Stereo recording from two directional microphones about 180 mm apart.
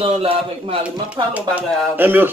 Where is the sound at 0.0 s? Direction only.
30° right (ahead or behind).